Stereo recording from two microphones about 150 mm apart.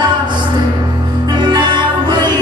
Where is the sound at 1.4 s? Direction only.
30° right (ahead or behind).